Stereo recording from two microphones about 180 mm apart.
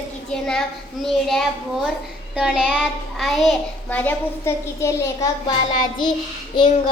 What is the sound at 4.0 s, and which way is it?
A child's voice, 10° left (ahead or behind).